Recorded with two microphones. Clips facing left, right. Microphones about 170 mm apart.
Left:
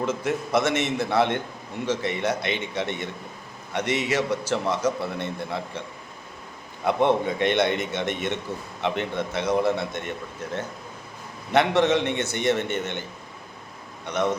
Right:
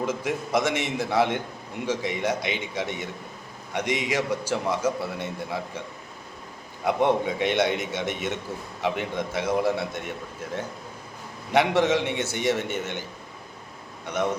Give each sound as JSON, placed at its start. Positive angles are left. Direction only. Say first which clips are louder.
{"t": 0.0, "sound": "a man's voice", "louder": "left 2 dB", "side_deg": -10}
{"t": 6.8, "sound": "a man's voice", "louder": "left 1 dB", "side_deg": -10}